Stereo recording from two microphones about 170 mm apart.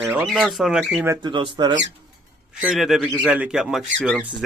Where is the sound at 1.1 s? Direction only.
25° right (ahead or behind).